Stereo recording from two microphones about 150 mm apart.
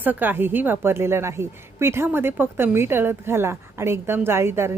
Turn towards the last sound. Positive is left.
turn(degrees=-15)  # may be behind; listen again after turning